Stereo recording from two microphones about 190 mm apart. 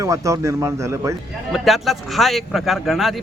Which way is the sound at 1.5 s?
Centre (ahead or behind).